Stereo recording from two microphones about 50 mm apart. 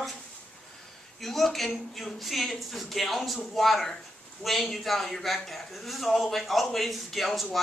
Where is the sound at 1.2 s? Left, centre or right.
Centre.